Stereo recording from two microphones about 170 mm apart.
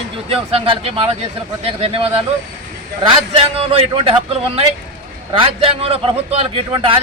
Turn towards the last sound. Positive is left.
turn(degrees=-35)  # may be behind; listen again after turning